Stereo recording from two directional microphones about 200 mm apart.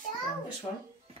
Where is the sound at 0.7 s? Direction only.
30° left (ahead or behind).